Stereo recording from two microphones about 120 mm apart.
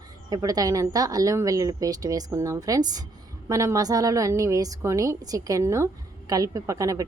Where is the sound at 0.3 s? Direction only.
30° right (ahead or behind).